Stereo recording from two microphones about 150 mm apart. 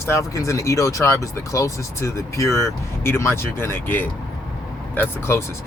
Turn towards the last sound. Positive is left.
turn(degrees=15)  # may be behind; listen again after turning